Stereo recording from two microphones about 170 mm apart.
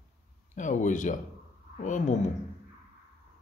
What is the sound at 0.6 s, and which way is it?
Speech, 50° left (ahead or behind).